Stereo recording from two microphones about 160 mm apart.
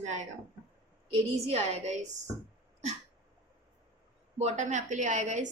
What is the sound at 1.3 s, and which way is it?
Speech, 40° right (ahead or behind).